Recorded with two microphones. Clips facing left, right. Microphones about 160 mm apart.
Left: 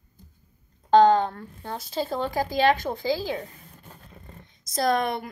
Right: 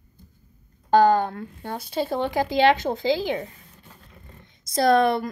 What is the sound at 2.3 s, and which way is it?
A woman's voice, 20° right (ahead or behind).